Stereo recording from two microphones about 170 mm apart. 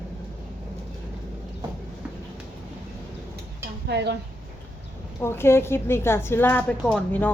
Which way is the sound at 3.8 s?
85° right.